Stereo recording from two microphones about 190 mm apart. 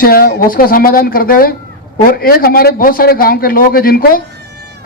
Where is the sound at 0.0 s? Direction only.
50° left (ahead or behind).